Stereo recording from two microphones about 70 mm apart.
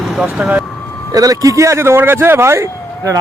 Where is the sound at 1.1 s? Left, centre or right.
Right.